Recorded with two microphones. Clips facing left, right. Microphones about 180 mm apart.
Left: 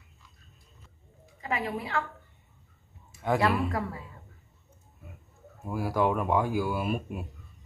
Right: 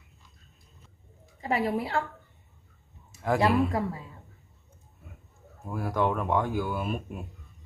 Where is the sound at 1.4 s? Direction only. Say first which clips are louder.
Right 5 dB; 35° right (ahead or behind).